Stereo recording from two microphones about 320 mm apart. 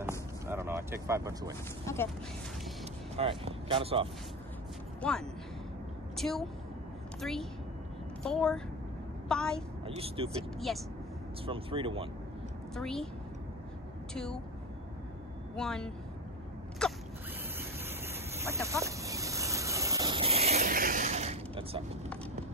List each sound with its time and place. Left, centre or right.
0.5 s a sound: centre
1.9 s speech: centre
3.2 s speech: centre
5.0 s a woman's voice: centre
9.8 s speech: centre
10.7 s speech: centre
11.4 s speech: centre
12.7 s speech: centre
14.1 s speech: centre
15.5 s speech: centre
16.8 s a sound: centre
17.6 s vehicle: centre